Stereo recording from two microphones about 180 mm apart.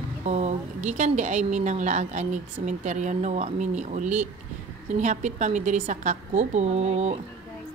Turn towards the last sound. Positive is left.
turn(degrees=-35)  # may be behind; listen again after turning